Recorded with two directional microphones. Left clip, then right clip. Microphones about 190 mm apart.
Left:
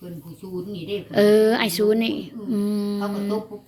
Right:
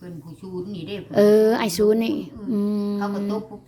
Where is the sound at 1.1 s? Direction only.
20° right (ahead or behind).